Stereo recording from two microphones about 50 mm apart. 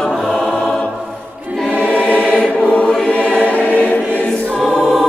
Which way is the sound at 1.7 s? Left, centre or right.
Left.